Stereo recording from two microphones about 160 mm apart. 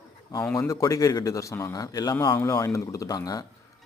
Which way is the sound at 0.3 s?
15° left (ahead or behind).